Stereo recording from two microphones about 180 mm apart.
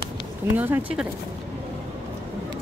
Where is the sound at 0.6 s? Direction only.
10° right (ahead or behind).